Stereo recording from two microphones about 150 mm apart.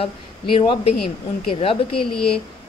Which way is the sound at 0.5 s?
35° left (ahead or behind).